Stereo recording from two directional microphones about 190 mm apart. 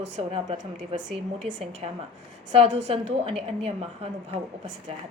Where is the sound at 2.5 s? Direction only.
30° right (ahead or behind).